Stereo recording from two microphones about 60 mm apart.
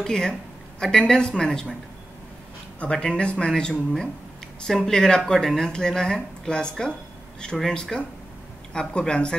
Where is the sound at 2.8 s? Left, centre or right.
Centre.